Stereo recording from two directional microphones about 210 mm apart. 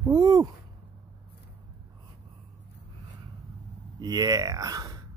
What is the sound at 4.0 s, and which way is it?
Speech, 20° right (ahead or behind).